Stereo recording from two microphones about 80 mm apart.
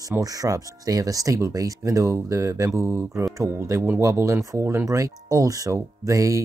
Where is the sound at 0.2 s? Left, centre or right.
Right.